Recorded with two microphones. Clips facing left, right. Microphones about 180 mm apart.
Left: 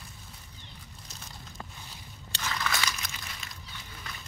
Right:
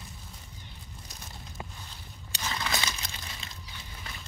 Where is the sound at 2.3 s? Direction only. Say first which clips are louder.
Even; 20° right (ahead or behind).